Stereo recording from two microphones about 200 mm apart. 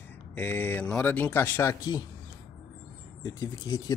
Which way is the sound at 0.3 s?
10° left (ahead or behind).